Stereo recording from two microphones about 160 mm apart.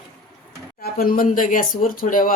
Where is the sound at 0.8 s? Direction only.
65° left (ahead or behind).